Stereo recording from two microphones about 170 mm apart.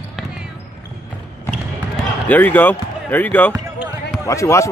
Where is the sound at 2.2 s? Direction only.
10° left (ahead or behind).